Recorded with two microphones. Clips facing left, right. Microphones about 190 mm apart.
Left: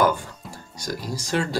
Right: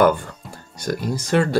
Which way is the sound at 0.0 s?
60° right (ahead or behind).